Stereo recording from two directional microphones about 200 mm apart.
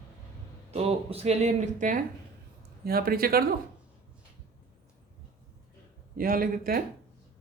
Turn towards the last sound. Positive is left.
turn(degrees=-45)  # may be behind; listen again after turning